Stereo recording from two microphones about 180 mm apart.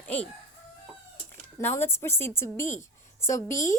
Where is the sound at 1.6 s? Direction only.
15° left (ahead or behind).